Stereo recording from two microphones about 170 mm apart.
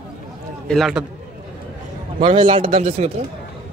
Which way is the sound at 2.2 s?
30° right (ahead or behind).